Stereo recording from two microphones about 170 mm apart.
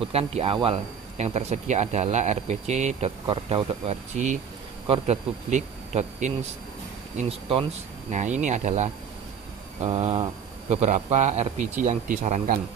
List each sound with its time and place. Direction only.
0.0 s speech: 35° right (ahead or behind)
3.3 s speech: 30° right (ahead or behind)
7.2 s speech: 35° right (ahead or behind)